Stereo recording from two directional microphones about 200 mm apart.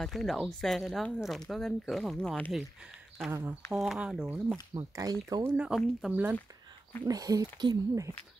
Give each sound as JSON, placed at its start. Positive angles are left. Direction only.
{"t": 0.0, "sound": "speech", "side_deg": 0}
{"t": 3.3, "sound": "speech", "side_deg": -15}
{"t": 3.7, "sound": "speech", "side_deg": 0}
{"t": 7.1, "sound": "speech", "side_deg": -20}